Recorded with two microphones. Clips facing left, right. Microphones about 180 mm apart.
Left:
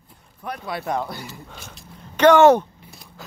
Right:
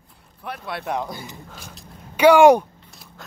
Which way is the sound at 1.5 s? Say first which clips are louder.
Even; centre (ahead or behind).